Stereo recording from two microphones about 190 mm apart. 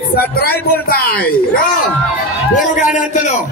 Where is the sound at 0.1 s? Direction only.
55° left (ahead or behind).